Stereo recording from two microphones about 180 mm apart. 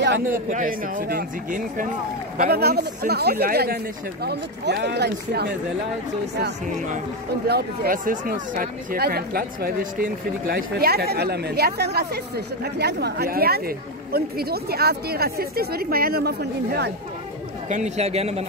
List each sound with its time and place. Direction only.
0.5 s speech: 45° right (ahead or behind); by 5.5 s 65° right (ahead or behind)
7.4 s speech: 60° right (ahead or behind)
17.6 s a man's voice: 40° right (ahead or behind)